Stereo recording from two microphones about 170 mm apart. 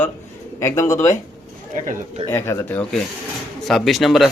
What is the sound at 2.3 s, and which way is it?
Speech, 15° left (ahead or behind).